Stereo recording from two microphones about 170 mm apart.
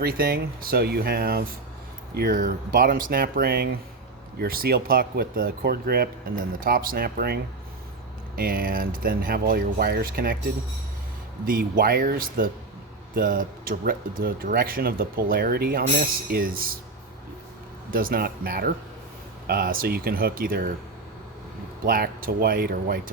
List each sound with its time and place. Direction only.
0.0 s speech: 60° right (ahead or behind)
8.4 s speech: 60° right (ahead or behind)
11.4 s speech: 60° right (ahead or behind)
17.9 s speech: 60° right (ahead or behind)
21.8 s speech: 60° right (ahead or behind)